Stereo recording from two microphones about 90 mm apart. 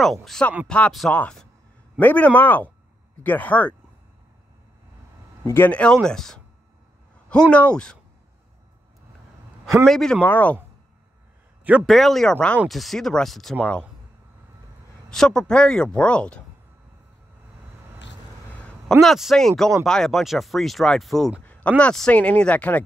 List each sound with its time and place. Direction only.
0.0 s speech: 5° left (ahead or behind)
2.0 s a man's voice: 15° left (ahead or behind)
5.7 s speech: 10° left (ahead or behind)
9.8 s speech: 5° left (ahead or behind)
10.2 s a man's voice: 20° left (ahead or behind)
11.9 s speech: centre (ahead or behind)
15.0 s speech: 5° left (ahead or behind)
18.9 s speech: centre (ahead or behind)
21.5 s speech: 15° left (ahead or behind)